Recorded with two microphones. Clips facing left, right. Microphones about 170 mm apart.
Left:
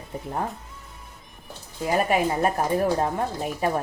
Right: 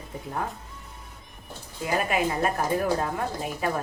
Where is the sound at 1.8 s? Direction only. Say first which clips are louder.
Left 3 dB; 35° left (ahead or behind).